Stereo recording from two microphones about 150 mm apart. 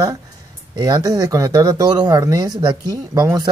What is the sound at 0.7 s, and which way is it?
Speech, 25° right (ahead or behind).